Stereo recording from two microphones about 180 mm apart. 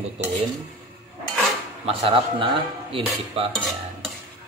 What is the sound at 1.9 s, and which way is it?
Dishes, 30° right (ahead or behind).